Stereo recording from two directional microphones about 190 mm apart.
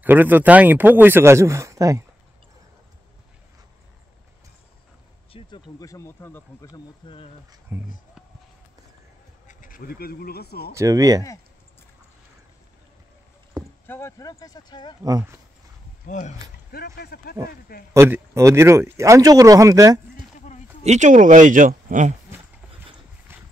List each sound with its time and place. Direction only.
0.0 s speech: 10° right (ahead or behind)
5.3 s speech: 20° left (ahead or behind)
7.0 s speech: 25° left (ahead or behind)
7.7 s speech: 10° right (ahead or behind)
9.5 s speech: 45° left (ahead or behind)
10.7 s speech: 15° right (ahead or behind)
13.8 s speech: 15° left (ahead or behind)
16.1 s speech: 40° left (ahead or behind)
17.9 s speech: 15° right (ahead or behind)
20.3 s a sound: 40° left (ahead or behind)
20.8 s speech: 40° right (ahead or behind)
23.3 s horse: 10° right (ahead or behind)